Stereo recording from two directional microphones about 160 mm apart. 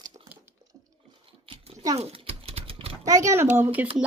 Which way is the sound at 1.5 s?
35° right (ahead or behind).